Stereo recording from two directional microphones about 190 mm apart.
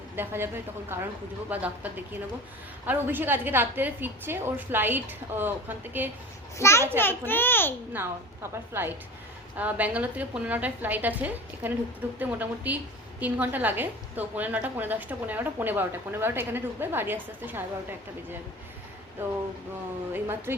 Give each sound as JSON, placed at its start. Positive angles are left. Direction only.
{"t": 0.2, "sound": "a woman's voice", "side_deg": -10}
{"t": 6.6, "sound": "a child's voice", "side_deg": 15}
{"t": 7.9, "sound": "a woman's voice", "side_deg": -10}
{"t": 20.1, "sound": "a woman's voice", "side_deg": -10}